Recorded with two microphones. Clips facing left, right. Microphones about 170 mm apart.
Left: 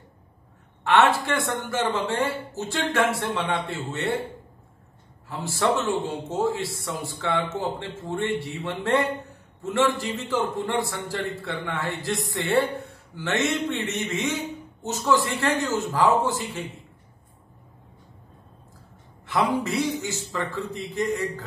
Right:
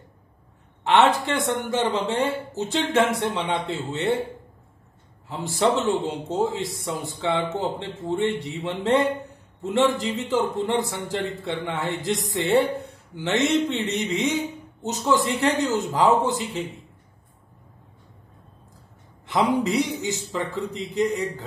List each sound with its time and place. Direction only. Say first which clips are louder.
0.8 s a man's voice: right 1 dB; 20° right (ahead or behind)
5.3 s a man's voice: right 2 dB; 20° right (ahead or behind)
19.5 s a man's voice: right 2 dB; 15° right (ahead or behind)